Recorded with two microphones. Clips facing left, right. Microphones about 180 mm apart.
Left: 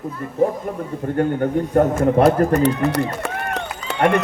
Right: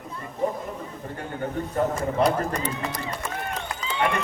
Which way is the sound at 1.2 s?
60° left (ahead or behind).